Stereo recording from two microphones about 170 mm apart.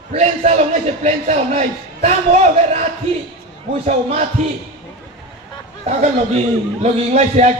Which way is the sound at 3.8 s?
40° right (ahead or behind).